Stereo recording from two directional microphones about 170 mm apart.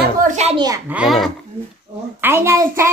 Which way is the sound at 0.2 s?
45° right (ahead or behind).